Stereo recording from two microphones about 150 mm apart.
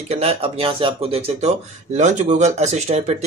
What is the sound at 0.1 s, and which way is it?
Speech, 40° right (ahead or behind).